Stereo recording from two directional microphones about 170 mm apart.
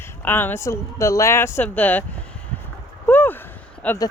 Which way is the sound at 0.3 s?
10° left (ahead or behind).